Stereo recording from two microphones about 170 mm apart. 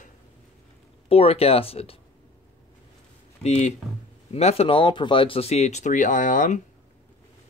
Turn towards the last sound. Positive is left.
turn(degrees=50)  # may be behind; listen again after turning